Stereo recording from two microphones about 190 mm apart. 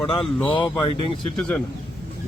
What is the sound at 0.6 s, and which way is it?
Speech, 25° left (ahead or behind).